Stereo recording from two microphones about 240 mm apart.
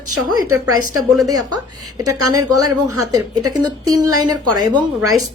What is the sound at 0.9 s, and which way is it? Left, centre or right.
A woman's voice, centre.